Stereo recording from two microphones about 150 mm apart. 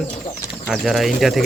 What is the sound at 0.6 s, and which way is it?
Speech, centre (ahead or behind).